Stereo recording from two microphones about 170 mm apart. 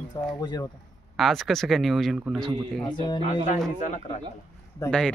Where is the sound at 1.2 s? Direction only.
Centre (ahead or behind).